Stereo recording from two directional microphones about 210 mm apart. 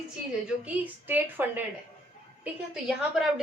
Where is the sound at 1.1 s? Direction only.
10° right (ahead or behind).